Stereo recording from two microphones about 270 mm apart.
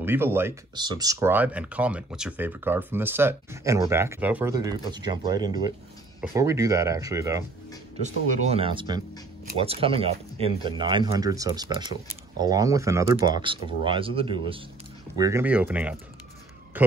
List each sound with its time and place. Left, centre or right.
0.0 s speech: centre
8.0 s speech: right; by 16.9 s centre